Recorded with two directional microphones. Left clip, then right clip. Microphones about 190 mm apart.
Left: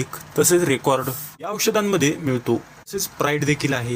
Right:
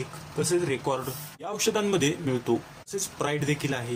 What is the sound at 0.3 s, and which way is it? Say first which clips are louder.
Speech: left 9 dB; 50° left (ahead or behind).